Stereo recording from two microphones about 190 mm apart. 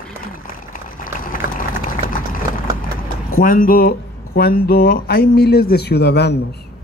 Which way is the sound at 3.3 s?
50° left (ahead or behind).